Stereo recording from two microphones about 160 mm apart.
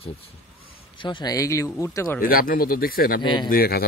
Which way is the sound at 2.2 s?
65° left (ahead or behind).